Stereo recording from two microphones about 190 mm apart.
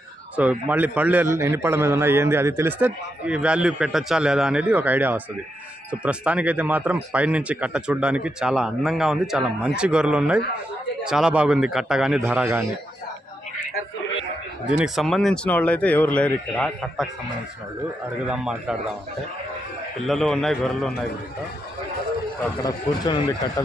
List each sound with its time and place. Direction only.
0.4 s a man's voice: 10° right (ahead or behind)
14.8 s speech: centre (ahead or behind)
18.2 s speech: 5° right (ahead or behind)
20.1 s speech: centre (ahead or behind)
22.6 s speech: 20° left (ahead or behind)